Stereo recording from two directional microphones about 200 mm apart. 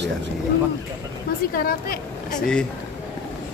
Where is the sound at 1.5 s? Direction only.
45° left (ahead or behind).